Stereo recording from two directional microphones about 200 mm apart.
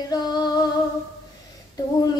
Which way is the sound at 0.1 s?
20° left (ahead or behind).